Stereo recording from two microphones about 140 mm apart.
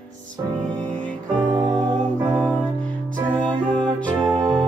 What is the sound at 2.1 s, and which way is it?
Music, 15° right (ahead or behind).